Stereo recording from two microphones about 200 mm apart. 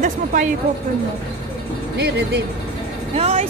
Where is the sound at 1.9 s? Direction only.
55° right (ahead or behind).